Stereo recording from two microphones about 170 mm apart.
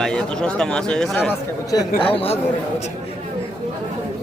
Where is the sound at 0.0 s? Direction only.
5° left (ahead or behind).